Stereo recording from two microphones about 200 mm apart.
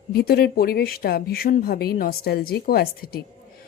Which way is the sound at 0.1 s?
50° left (ahead or behind).